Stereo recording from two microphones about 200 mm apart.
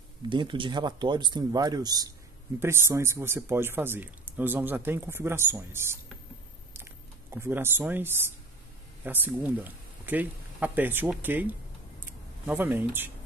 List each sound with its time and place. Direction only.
0.3 s speech: 25° right (ahead or behind)
6.7 s typing: 10° right (ahead or behind)
9.0 s speech: 10° right (ahead or behind)
12.0 s a sound: 10° right (ahead or behind)